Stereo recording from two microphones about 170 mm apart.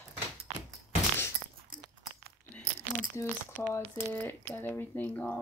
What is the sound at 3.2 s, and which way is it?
Speech, 15° left (ahead or behind).